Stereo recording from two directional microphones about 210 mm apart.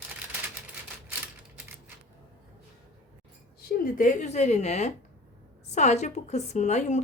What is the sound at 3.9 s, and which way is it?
A woman's voice, 35° left (ahead or behind).